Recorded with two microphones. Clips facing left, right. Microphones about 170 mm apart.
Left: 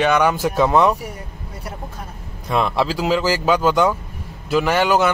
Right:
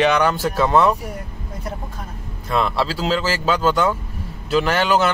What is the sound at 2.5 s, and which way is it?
Speech, 15° left (ahead or behind).